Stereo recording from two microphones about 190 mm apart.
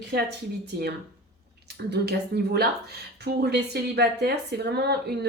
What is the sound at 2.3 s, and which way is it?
A woman's voice, 55° right (ahead or behind).